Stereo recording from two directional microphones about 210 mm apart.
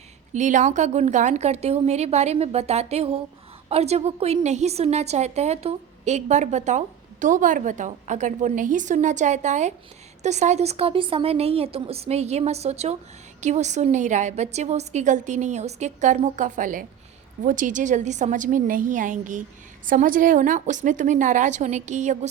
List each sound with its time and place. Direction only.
0.3 s a woman's voice: 35° right (ahead or behind)